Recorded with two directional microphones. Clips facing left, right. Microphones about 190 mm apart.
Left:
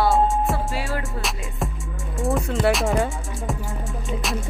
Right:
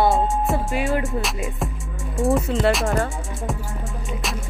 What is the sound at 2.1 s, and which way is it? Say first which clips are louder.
Music: right 3 dB; centre (ahead or behind).